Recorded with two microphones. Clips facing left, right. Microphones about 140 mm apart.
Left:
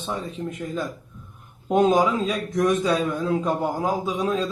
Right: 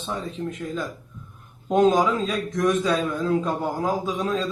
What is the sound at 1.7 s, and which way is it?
A man's voice, 10° left (ahead or behind).